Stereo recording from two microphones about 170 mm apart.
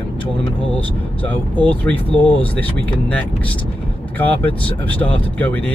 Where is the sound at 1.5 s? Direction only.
10° left (ahead or behind).